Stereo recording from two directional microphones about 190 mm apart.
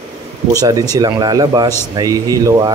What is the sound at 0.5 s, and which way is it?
A man's voice, 20° right (ahead or behind).